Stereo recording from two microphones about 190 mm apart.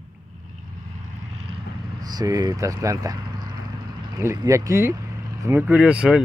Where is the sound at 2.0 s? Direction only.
20° right (ahead or behind).